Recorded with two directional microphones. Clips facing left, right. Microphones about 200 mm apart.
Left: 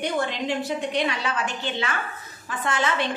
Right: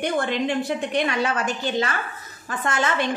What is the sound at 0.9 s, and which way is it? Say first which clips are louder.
A woman's voice: right 3 dB; 50° right (ahead or behind).